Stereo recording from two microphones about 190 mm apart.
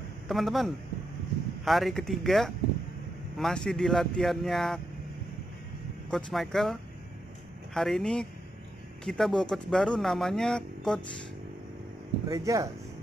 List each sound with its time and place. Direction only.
0.3 s speech: centre (ahead or behind)
6.0 s speech: centre (ahead or behind)
12.3 s speech: 20° right (ahead or behind)